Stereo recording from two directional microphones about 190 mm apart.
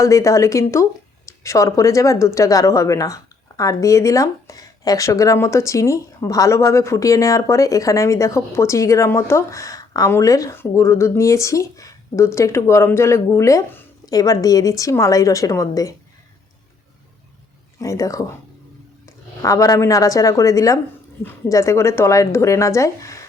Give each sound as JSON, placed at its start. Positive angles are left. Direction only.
{"t": 0.0, "sound": "speech", "side_deg": 15}
{"t": 17.7, "sound": "speech", "side_deg": 15}
{"t": 19.4, "sound": "speech", "side_deg": 15}